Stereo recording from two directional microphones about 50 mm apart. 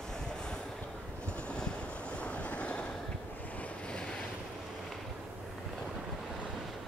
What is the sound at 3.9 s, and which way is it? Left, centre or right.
Waves, centre.